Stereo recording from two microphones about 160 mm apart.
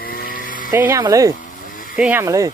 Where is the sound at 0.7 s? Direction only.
15° right (ahead or behind).